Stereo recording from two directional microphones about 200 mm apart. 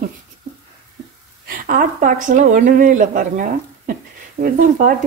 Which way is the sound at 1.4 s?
45° right (ahead or behind).